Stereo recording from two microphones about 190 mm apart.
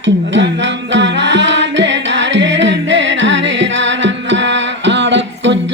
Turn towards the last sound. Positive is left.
turn(degrees=-70)  # may be behind; listen again after turning